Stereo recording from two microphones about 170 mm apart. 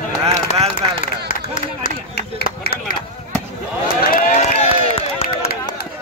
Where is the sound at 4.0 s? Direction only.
60° left (ahead or behind).